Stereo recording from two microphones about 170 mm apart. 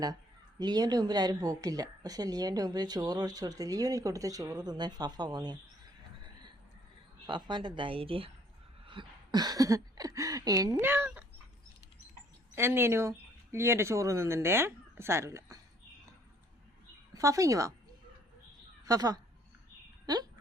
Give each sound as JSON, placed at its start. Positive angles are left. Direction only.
{"t": 0.6, "sound": "speech", "side_deg": -25}
{"t": 7.3, "sound": "speech", "side_deg": -25}
{"t": 12.5, "sound": "speech", "side_deg": -15}
{"t": 17.2, "sound": "speech", "side_deg": -20}
{"t": 18.9, "sound": "speech", "side_deg": -20}